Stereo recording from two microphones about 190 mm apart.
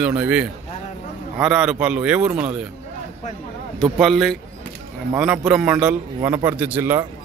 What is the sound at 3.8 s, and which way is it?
A man's voice, centre (ahead or behind).